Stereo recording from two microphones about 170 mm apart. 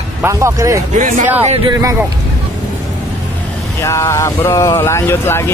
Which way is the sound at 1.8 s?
15° right (ahead or behind).